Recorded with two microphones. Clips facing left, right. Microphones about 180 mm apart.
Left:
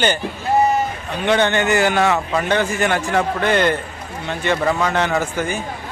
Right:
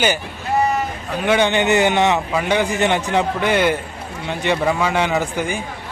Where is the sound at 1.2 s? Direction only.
10° right (ahead or behind).